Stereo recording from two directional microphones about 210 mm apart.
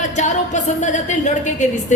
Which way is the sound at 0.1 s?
35° left (ahead or behind).